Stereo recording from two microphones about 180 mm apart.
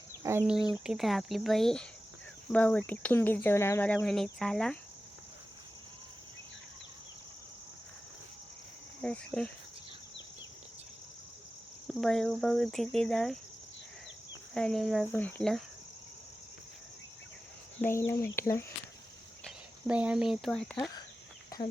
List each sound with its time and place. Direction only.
0.2 s speech: 15° right (ahead or behind)
0.7 s speech: centre (ahead or behind)
2.5 s cricket: 5° left (ahead or behind)
9.0 s speech: 5° left (ahead or behind)
11.9 s speech: centre (ahead or behind)
14.5 s speech: 5° left (ahead or behind)
15.1 s cricket: 10° left (ahead or behind)
17.7 s cricket: 15° left (ahead or behind)
19.5 s speech: 5° right (ahead or behind)